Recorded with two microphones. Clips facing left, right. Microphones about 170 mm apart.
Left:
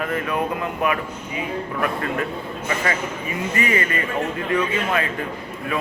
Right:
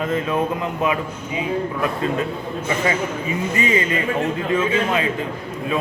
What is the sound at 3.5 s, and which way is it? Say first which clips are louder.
Speech: right 2 dB; 20° right (ahead or behind).